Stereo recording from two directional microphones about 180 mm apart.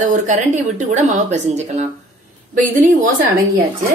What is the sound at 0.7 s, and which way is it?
A woman's voice, 40° right (ahead or behind).